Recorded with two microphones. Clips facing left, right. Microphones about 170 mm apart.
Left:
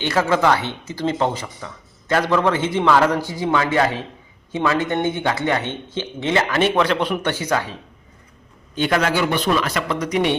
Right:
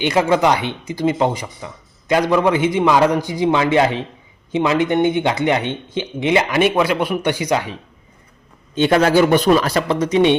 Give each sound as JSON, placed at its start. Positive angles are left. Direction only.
{"t": 0.0, "sound": "speech", "side_deg": -15}
{"t": 8.7, "sound": "a man's voice", "side_deg": -25}